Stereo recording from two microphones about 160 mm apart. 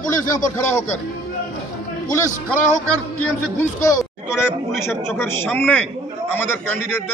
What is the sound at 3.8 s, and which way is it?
Speech, 20° left (ahead or behind).